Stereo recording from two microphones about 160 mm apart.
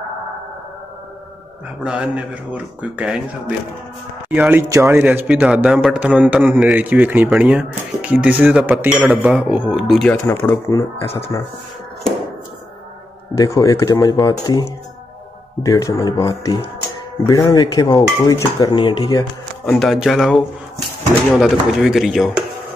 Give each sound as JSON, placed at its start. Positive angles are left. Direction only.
{"t": 1.8, "sound": "speech", "side_deg": -5}
{"t": 10.0, "sound": "speech", "side_deg": 10}
{"t": 13.4, "sound": "speech", "side_deg": 20}
{"t": 19.6, "sound": "speech", "side_deg": 0}